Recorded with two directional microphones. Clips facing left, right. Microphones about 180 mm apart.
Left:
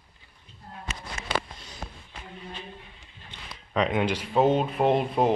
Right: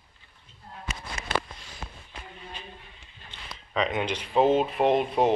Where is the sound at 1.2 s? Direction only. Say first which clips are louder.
Left 3 dB; 15° right (ahead or behind).